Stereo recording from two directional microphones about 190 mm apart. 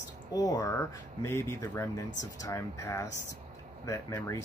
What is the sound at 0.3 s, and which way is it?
Speech, 20° left (ahead or behind).